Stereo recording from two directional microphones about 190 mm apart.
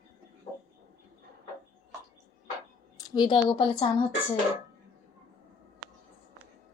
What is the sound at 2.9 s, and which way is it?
A woman's voice, 20° left (ahead or behind).